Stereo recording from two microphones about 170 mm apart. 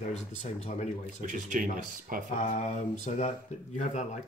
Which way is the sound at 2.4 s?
45° left (ahead or behind).